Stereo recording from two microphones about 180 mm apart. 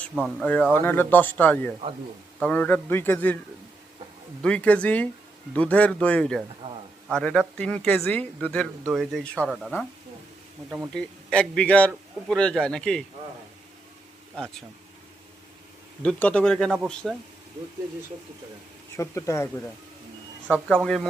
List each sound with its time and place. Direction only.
0.4 s speech: 10° left (ahead or behind)
4.4 s a man's voice: 5° left (ahead or behind)
16.0 s a man's voice: 5° left (ahead or behind)
18.9 s speech: 15° left (ahead or behind)
20.8 s a man's voice: 5° left (ahead or behind)